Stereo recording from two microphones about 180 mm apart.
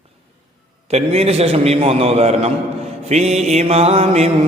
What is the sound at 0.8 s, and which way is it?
Mantra, 35° right (ahead or behind).